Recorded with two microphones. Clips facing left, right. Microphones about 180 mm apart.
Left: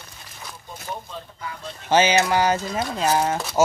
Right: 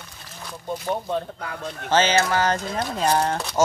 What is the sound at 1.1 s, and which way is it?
Speech, 65° right (ahead or behind).